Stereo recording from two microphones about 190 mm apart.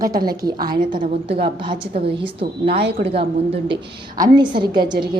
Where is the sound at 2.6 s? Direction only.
60° right (ahead or behind).